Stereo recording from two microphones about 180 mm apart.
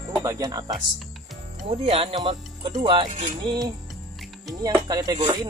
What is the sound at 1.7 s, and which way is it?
Speech, 35° right (ahead or behind).